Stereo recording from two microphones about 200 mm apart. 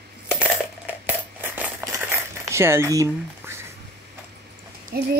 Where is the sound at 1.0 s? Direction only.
10° right (ahead or behind).